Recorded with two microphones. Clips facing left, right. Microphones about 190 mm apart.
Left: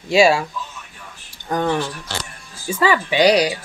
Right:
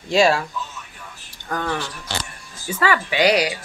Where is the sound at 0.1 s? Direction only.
10° left (ahead or behind).